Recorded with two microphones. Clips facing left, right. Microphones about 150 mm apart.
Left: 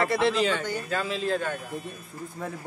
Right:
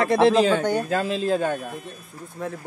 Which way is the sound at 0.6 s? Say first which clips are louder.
Right 9 dB; 60° right (ahead or behind).